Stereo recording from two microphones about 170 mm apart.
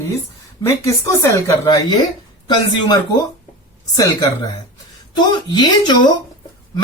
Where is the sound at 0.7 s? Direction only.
15° left (ahead or behind).